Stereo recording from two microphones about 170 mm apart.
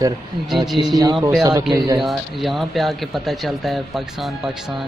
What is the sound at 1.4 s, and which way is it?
Speech, 20° right (ahead or behind).